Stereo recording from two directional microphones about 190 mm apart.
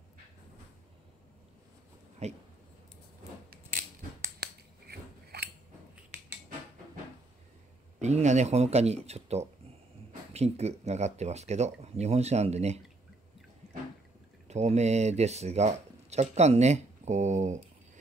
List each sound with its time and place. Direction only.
2.2 s speech: 35° right (ahead or behind)
4.4 s scissors: 55° right (ahead or behind)
8.0 s speech: 35° right (ahead or behind)
14.5 s speech: 35° right (ahead or behind)